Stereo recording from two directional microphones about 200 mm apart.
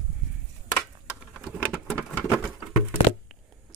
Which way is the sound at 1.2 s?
5° right (ahead or behind).